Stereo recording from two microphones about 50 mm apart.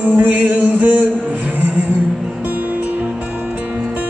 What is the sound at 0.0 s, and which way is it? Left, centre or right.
Music, right.